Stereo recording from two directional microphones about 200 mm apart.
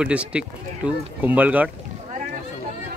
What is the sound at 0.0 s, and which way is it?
Speech, 5° right (ahead or behind).